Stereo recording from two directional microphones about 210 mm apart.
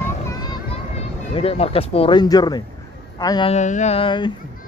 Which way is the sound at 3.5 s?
35° left (ahead or behind).